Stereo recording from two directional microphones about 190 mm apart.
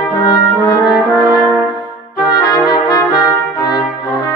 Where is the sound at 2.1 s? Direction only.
20° left (ahead or behind).